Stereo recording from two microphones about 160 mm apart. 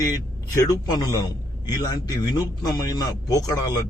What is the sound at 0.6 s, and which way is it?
A man's voice, 25° left (ahead or behind).